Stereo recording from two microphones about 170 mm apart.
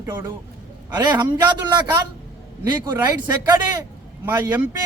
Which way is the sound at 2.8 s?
20° right (ahead or behind).